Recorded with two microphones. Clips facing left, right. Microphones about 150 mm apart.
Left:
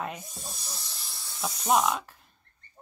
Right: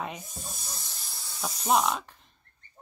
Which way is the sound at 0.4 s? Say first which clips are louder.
Even; 50° right (ahead or behind).